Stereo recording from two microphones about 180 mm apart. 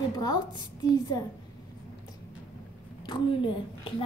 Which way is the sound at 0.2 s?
20° left (ahead or behind).